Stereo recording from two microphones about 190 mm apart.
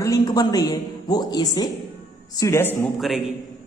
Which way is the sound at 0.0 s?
20° left (ahead or behind).